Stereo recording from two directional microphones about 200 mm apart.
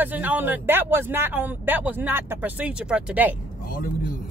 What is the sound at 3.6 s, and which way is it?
Speech, 45° left (ahead or behind).